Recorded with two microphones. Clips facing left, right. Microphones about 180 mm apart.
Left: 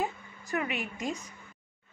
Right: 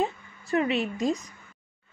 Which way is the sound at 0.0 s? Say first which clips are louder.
Right 5 dB; 30° right (ahead or behind).